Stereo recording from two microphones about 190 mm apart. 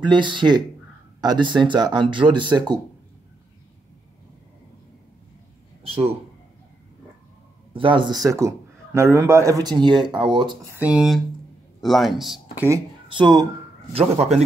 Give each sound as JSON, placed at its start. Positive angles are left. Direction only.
{"t": 0.0, "sound": "a man's voice", "side_deg": -25}
{"t": 5.9, "sound": "a man's voice", "side_deg": -30}
{"t": 7.7, "sound": "a man's voice", "side_deg": -25}
{"t": 10.7, "sound": "speech", "side_deg": -5}
{"t": 12.6, "sound": "a man's voice", "side_deg": -20}